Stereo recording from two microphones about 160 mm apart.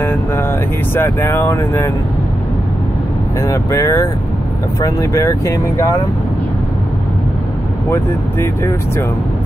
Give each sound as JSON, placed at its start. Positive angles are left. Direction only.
{"t": 0.0, "sound": "vehicle", "side_deg": 10}
{"t": 0.9, "sound": "speech", "side_deg": 15}
{"t": 3.3, "sound": "speech", "side_deg": 20}
{"t": 7.9, "sound": "speech", "side_deg": 15}